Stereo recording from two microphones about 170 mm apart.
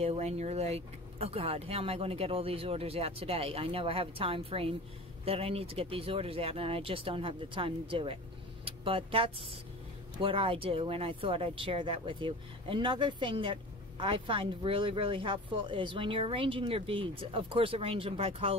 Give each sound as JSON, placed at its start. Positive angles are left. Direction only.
{"t": 0.0, "sound": "speech", "side_deg": -35}